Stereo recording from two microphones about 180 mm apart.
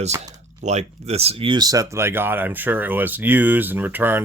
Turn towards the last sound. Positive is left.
turn(degrees=-10)  # may be behind; listen again after turning